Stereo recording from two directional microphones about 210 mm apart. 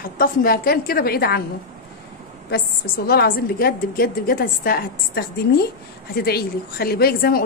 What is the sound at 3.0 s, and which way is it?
A woman's voice, 45° left (ahead or behind).